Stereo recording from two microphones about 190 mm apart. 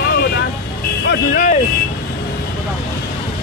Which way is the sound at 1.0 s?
65° left (ahead or behind).